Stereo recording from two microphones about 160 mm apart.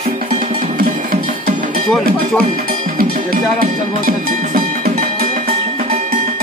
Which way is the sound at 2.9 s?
65° right (ahead or behind).